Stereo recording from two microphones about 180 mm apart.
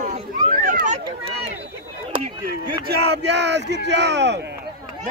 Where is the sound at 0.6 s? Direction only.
45° right (ahead or behind).